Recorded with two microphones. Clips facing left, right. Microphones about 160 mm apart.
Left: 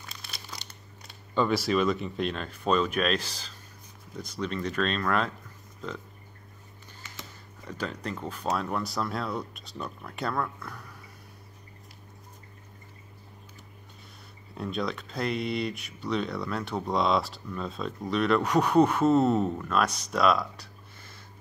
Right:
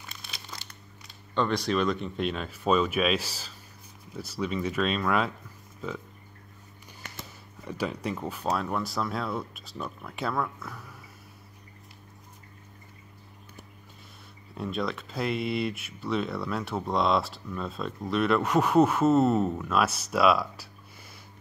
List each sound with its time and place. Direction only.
0.0 s crumpling: centre (ahead or behind)
1.3 s speech: 5° left (ahead or behind)
7.6 s speech: 10° right (ahead or behind)
14.5 s speech: centre (ahead or behind)